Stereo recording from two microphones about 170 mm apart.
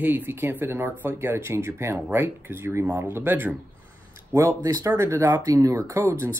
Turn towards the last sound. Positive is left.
turn(degrees=-15)  # may be behind; listen again after turning